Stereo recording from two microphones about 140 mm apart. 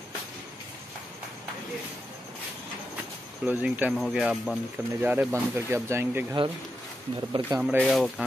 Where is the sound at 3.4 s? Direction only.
10° right (ahead or behind).